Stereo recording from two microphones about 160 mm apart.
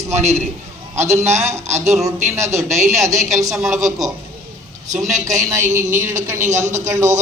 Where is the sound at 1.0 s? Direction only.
15° right (ahead or behind).